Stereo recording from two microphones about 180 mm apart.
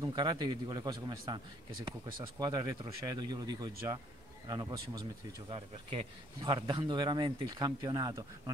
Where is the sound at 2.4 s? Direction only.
20° right (ahead or behind).